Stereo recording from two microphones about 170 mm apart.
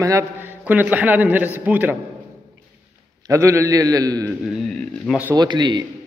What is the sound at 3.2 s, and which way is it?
A man's voice, 15° right (ahead or behind).